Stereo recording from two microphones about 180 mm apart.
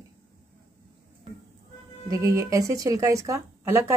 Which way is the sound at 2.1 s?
15° right (ahead or behind).